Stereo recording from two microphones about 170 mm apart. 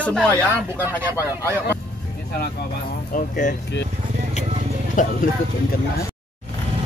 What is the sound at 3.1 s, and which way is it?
Speech, 50° left (ahead or behind).